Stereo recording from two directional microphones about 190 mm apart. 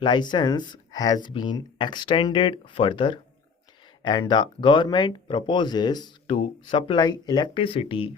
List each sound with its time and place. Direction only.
0.0 s speech: 25° left (ahead or behind)